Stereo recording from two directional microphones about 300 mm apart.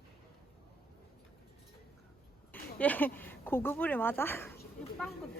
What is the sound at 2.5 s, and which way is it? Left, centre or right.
Speech, centre.